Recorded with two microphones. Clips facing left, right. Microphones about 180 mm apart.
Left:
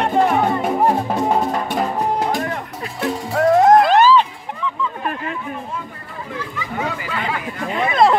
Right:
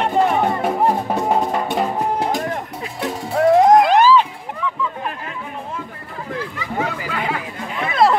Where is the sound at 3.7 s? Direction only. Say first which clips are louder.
Even; 10° right (ahead or behind).